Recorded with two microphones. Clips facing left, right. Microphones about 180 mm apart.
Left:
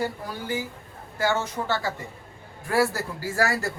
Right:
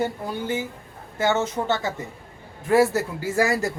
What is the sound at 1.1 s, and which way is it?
Speech, 20° right (ahead or behind).